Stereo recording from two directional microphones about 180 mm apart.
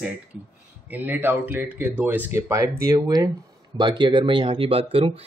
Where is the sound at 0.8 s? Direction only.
10° right (ahead or behind).